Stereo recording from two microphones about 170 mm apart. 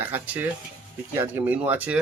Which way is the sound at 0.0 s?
10° right (ahead or behind).